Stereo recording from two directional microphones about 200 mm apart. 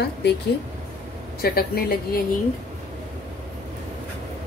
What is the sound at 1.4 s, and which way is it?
Speech, 50° left (ahead or behind).